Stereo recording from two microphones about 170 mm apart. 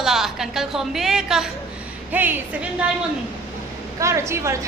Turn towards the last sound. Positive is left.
turn(degrees=-15)  # may be behind; listen again after turning